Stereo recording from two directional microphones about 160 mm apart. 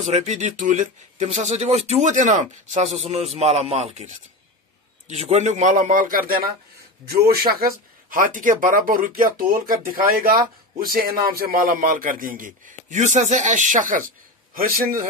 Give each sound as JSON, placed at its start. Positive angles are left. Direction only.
{"t": 0.0, "sound": "speech", "side_deg": -45}